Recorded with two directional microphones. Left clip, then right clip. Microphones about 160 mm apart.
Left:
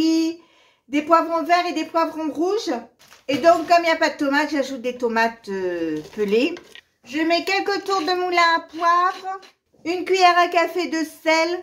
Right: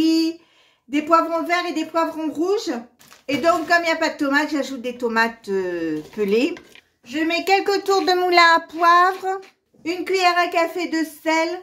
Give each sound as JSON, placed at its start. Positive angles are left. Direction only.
{"t": 0.0, "sound": "a sound", "side_deg": -5}
{"t": 0.9, "sound": "speech", "side_deg": -5}
{"t": 9.8, "sound": "a woman's voice", "side_deg": 0}